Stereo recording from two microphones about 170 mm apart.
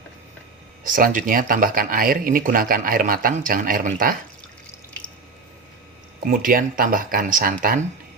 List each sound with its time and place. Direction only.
0.9 s speech: 50° right (ahead or behind)
6.1 s speech: 55° right (ahead or behind)